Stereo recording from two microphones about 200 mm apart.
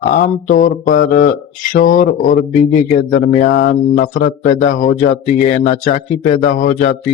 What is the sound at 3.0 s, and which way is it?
Speech, 45° left (ahead or behind).